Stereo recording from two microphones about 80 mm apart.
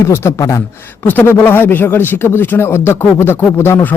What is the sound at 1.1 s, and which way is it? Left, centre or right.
Speech, left.